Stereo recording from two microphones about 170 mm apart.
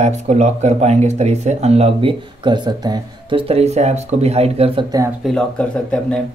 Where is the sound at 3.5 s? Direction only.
40° right (ahead or behind).